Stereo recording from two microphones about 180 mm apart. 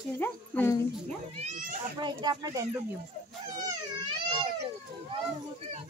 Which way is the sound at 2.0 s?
25° right (ahead or behind).